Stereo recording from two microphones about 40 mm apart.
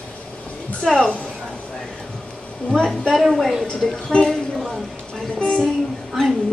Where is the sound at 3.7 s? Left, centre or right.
Centre.